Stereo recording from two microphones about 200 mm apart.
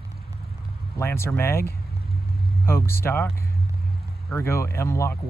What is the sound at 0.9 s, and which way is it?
Speech, 15° left (ahead or behind).